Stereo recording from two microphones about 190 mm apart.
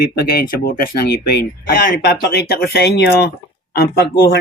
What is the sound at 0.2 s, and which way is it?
Speech, 55° left (ahead or behind).